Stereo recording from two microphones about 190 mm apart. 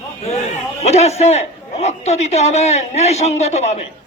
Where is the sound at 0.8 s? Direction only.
35° left (ahead or behind).